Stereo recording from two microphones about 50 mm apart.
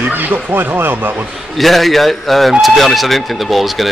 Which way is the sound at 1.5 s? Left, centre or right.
Centre.